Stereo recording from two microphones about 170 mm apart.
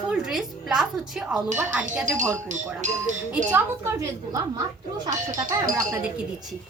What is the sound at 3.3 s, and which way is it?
A woman's voice, 10° right (ahead or behind).